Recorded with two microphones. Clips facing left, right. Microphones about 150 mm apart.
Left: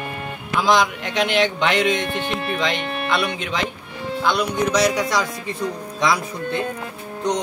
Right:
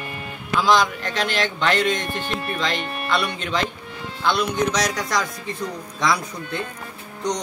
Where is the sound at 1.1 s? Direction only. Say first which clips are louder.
Left 5 dB; 20° left (ahead or behind).